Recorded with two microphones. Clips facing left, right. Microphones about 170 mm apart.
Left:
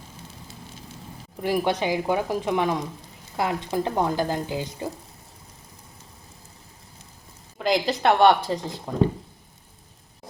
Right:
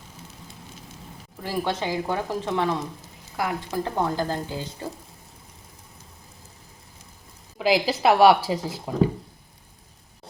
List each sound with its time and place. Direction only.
1.4 s speech: 15° left (ahead or behind)
7.6 s a woman's voice: 5° right (ahead or behind)